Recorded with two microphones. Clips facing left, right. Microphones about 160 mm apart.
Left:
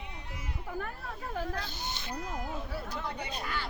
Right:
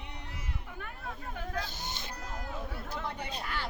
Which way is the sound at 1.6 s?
45° right (ahead or behind).